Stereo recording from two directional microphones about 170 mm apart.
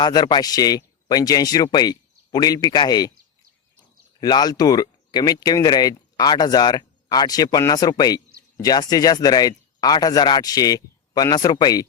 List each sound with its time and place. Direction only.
0.0 s speech: 25° left (ahead or behind)
4.2 s speech: 25° left (ahead or behind)